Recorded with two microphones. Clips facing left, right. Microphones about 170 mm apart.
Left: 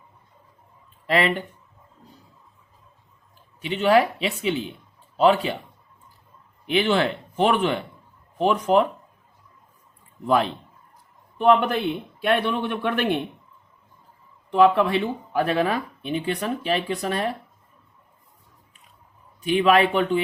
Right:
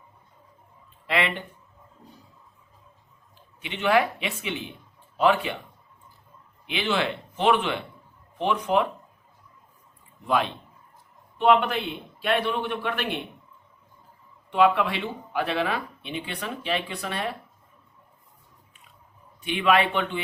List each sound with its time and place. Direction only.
1.0 s speech: 40° left (ahead or behind)
3.6 s speech: 35° left (ahead or behind)
6.7 s speech: 40° left (ahead or behind)
10.2 s speech: 40° left (ahead or behind)
14.6 s speech: 40° left (ahead or behind)
19.5 s speech: 40° left (ahead or behind)